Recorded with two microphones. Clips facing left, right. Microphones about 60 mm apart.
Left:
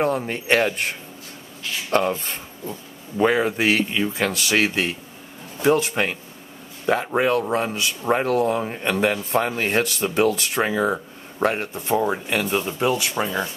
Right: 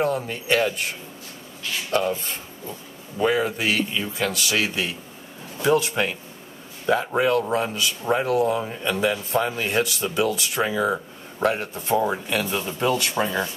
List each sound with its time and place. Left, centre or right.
0.0 s a man's voice: left
7.2 s a man's voice: left; by 13.3 s centre